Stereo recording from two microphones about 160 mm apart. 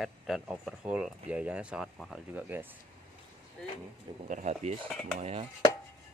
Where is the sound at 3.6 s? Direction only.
5° left (ahead or behind).